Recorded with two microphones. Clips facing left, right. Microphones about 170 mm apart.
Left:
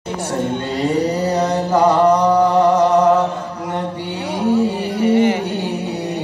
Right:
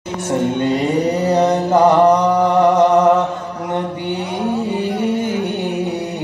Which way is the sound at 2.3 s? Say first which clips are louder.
Even; 20° right (ahead or behind).